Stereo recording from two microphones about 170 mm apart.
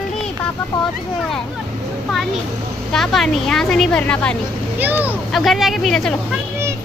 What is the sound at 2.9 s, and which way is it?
A woman's voice, centre (ahead or behind).